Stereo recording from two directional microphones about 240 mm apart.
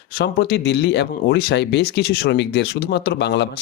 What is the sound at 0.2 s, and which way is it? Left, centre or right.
Speech, left.